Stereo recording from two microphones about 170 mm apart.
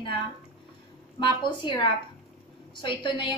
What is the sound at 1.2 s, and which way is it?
A woman's voice, 25° left (ahead or behind).